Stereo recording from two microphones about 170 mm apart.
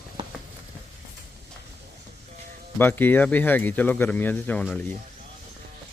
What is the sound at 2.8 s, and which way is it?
Speech, 10° left (ahead or behind).